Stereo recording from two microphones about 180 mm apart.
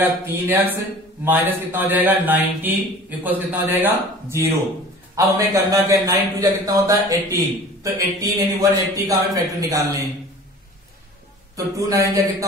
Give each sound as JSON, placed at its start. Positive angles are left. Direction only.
{"t": 0.0, "sound": "a man's voice", "side_deg": -10}
{"t": 11.5, "sound": "a man's voice", "side_deg": -20}